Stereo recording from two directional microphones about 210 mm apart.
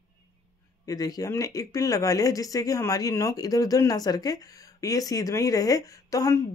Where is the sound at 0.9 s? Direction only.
15° left (ahead or behind).